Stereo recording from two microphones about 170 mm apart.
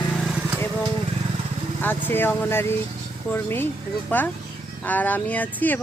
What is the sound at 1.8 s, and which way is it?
Speech, 10° left (ahead or behind).